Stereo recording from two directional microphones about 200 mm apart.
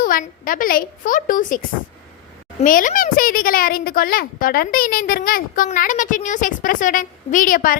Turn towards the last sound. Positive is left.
turn(degrees=45)  # may be behind; listen again after turning